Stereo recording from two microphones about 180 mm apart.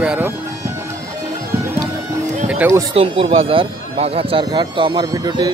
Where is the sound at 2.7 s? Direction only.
30° right (ahead or behind).